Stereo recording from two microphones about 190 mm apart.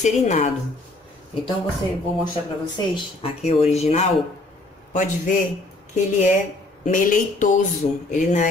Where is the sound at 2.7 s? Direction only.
25° left (ahead or behind); by 5.4 s 45° left (ahead or behind).